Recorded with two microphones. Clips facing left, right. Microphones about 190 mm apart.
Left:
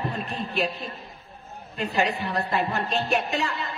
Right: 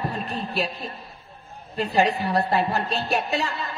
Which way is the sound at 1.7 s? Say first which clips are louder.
Right 4 dB; 35° right (ahead or behind).